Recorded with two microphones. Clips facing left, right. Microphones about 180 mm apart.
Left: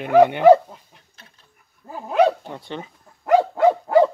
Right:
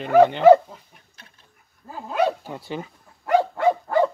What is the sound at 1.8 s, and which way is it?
Dog, 40° left (ahead or behind).